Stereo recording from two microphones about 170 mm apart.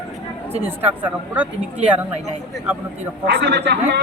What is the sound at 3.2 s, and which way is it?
Speech, 90° right.